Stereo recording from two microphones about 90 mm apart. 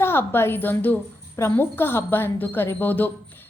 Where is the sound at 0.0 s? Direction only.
25° left (ahead or behind).